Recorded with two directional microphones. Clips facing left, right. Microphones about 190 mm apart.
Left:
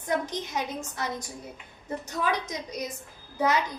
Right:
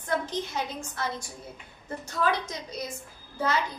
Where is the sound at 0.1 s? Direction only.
15° left (ahead or behind).